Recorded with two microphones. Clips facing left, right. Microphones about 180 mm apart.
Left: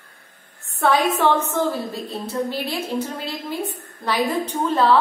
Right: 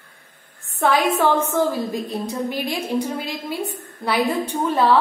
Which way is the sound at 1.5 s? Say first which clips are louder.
Right 2 dB; 15° right (ahead or behind).